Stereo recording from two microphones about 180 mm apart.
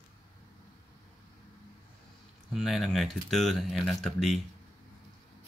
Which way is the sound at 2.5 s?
Centre (ahead or behind).